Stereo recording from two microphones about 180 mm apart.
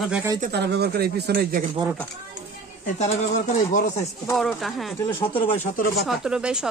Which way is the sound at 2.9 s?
40° left (ahead or behind).